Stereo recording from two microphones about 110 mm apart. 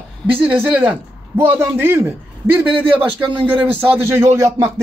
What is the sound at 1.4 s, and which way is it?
A man's voice, 20° right (ahead or behind).